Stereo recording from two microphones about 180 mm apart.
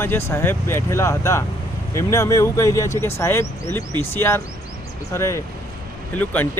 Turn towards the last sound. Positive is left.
turn(degrees=10)  # may be behind; listen again after turning